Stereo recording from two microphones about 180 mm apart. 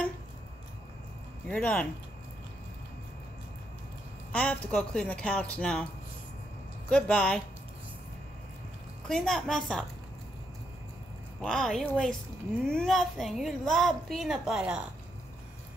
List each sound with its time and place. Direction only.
1.5 s speech: 5° left (ahead or behind)
4.3 s a woman's voice: 5° left (ahead or behind)
6.9 s a woman's voice: 5° left (ahead or behind)
9.0 s a woman's voice: 5° left (ahead or behind)
11.4 s a woman's voice: centre (ahead or behind)